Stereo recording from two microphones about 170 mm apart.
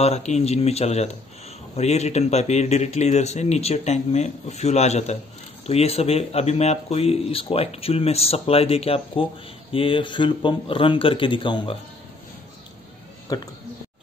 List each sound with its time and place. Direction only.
0.0 s speech: 40° left (ahead or behind)
13.3 s speech: 20° left (ahead or behind)